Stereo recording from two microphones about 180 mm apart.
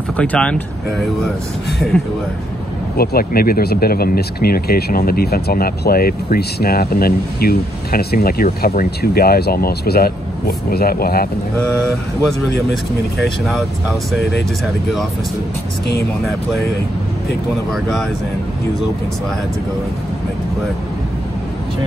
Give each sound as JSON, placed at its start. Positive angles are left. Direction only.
{"t": 0.2, "sound": "speech", "side_deg": 5}
{"t": 3.0, "sound": "speech", "side_deg": 55}
{"t": 13.5, "sound": "speech", "side_deg": 0}